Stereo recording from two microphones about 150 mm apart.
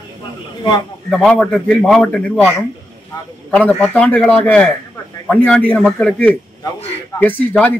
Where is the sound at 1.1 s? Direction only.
5° left (ahead or behind).